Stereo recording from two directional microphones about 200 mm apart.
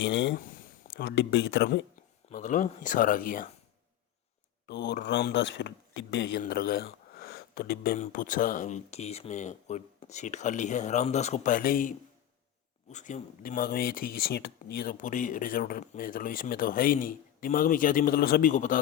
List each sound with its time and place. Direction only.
0.0 s speech: 60° left (ahead or behind)
2.3 s speech: 40° left (ahead or behind)
4.7 s speech: 55° left (ahead or behind)
6.4 s speech: 50° left (ahead or behind)
7.2 s a sound: 50° left (ahead or behind)
7.9 s speech: 40° left (ahead or behind)